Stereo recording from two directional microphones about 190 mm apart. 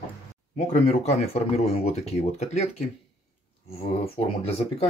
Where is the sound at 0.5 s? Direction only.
35° left (ahead or behind).